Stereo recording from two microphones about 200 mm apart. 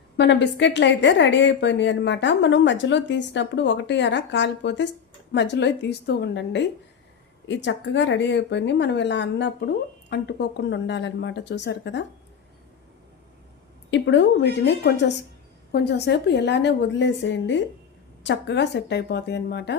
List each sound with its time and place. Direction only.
0.2 s a woman's voice: 65° left (ahead or behind)
13.9 s a woman's voice: 65° left (ahead or behind)